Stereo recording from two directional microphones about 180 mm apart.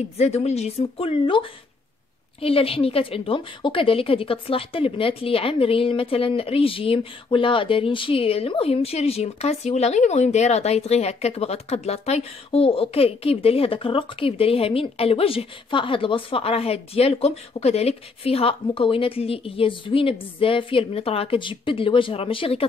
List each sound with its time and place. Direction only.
0.2 s a woman's voice: 35° left (ahead or behind)